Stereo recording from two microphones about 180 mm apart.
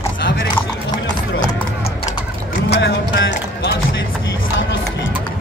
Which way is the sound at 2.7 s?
75° left (ahead or behind).